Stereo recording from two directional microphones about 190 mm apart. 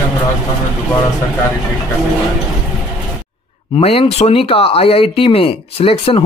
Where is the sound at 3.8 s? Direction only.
30° left (ahead or behind).